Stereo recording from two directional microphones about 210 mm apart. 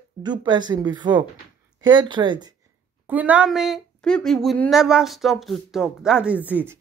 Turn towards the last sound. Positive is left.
turn(degrees=-10)  # may be behind; listen again after turning